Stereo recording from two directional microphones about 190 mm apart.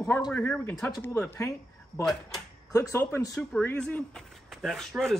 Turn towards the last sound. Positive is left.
turn(degrees=0)  # may be behind; listen again after turning